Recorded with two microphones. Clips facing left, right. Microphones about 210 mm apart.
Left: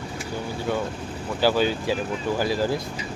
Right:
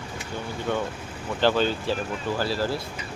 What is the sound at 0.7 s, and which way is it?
Speech, 10° left (ahead or behind).